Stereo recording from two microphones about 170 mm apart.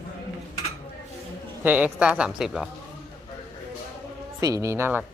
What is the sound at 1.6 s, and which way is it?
Speech, 10° right (ahead or behind).